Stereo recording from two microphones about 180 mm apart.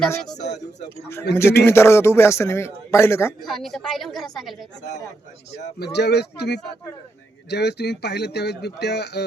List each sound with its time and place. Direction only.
1.4 s a man's voice: 15° left (ahead or behind)
3.4 s a woman's voice: centre (ahead or behind)
5.8 s speech: 65° left (ahead or behind)